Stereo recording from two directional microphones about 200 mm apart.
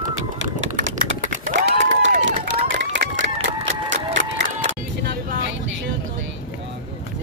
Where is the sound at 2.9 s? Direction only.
70° right (ahead or behind).